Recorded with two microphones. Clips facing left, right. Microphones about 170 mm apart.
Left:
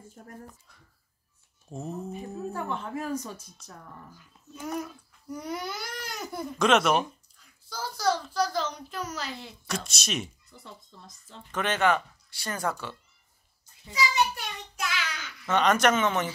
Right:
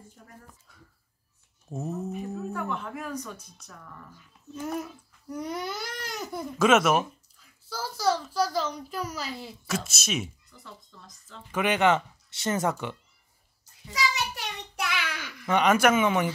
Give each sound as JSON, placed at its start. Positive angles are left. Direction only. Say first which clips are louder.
{"t": 0.2, "sound": "speech", "louder": "left 6 dB", "side_deg": 50}
{"t": 1.7, "sound": "speech", "louder": "right 3 dB", "side_deg": -5}
{"t": 2.5, "sound": "a woman's voice", "louder": "even", "side_deg": 30}
{"t": 4.1, "sound": "speech", "louder": "right 5 dB", "side_deg": 0}
{"t": 10.5, "sound": "speech", "louder": "left 1 dB", "side_deg": 25}
{"t": 11.5, "sound": "speech", "louder": "right 2 dB", "side_deg": -15}
{"t": 14.1, "sound": "child singing", "louder": "left 5 dB", "side_deg": -70}
{"t": 15.4, "sound": "speech", "louder": "right 1 dB", "side_deg": -10}